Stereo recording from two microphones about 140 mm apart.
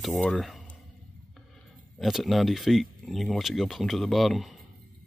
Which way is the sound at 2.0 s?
Centre (ahead or behind).